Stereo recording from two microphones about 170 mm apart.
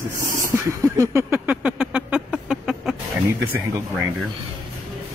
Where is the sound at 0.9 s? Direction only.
15° right (ahead or behind).